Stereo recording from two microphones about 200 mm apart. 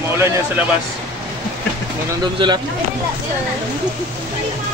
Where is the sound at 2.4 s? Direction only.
25° right (ahead or behind).